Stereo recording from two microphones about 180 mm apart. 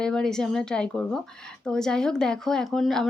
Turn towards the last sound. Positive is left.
turn(degrees=0)  # may be behind; listen again after turning